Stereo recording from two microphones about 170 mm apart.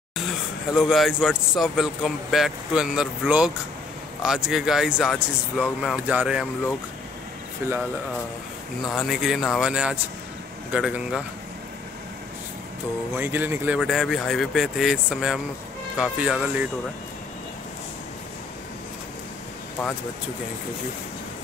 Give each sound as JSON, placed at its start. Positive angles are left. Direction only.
{"t": 0.7, "sound": "speech", "side_deg": 0}
{"t": 7.6, "sound": "speech", "side_deg": -15}
{"t": 8.9, "sound": "speech", "side_deg": 0}
{"t": 13.2, "sound": "speech", "side_deg": -10}
{"t": 13.7, "sound": "speech", "side_deg": 0}